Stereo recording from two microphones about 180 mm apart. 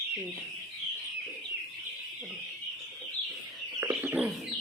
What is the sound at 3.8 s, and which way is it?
Chicken, 10° right (ahead or behind).